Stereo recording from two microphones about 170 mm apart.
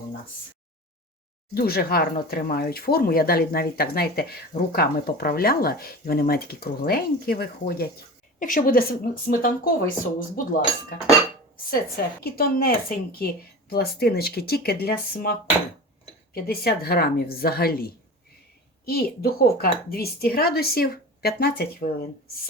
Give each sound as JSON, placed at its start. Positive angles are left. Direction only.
{"t": 1.5, "sound": "speech", "side_deg": 65}
{"t": 12.2, "sound": "speech", "side_deg": 60}